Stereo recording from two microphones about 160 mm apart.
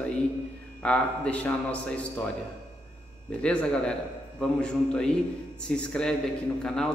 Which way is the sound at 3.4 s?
5° left (ahead or behind).